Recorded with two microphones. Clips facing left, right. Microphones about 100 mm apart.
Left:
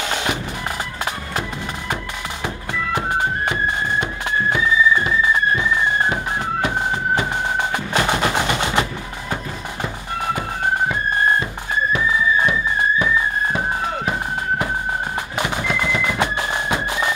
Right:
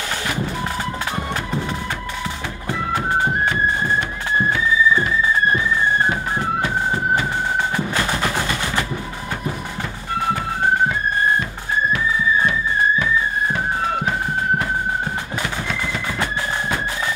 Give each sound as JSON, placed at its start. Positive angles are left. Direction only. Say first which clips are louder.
{"t": 0.1, "sound": "music", "louder": "left 3 dB", "side_deg": 20}
{"t": 7.7, "sound": "music", "louder": "left 2 dB", "side_deg": 20}
{"t": 15.3, "sound": "music", "louder": "left 3 dB", "side_deg": 15}